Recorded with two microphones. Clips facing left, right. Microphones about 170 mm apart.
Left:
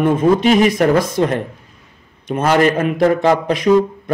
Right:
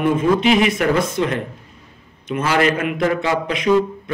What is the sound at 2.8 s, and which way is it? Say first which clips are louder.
Speech: left 5 dB; 40° left (ahead or behind).